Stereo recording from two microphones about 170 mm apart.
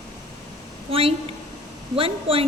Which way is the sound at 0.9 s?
35° right (ahead or behind).